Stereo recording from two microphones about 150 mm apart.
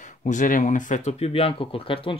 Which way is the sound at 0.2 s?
55° left (ahead or behind).